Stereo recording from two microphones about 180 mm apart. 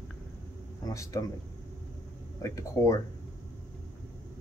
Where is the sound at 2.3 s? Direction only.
15° left (ahead or behind).